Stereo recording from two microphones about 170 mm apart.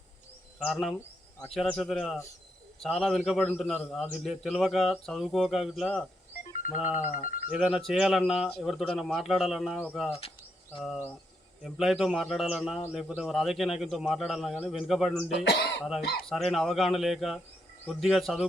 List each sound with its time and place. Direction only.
0.6 s a man's voice: centre (ahead or behind)
4.1 s speech: centre (ahead or behind)
6.9 s speech: 50° left (ahead or behind)
7.5 s speech: 5° right (ahead or behind)
10.1 s speech: 35° left (ahead or behind)
10.8 s speech: centre (ahead or behind)
15.4 s speech: 80° left
15.8 s speech: centre (ahead or behind)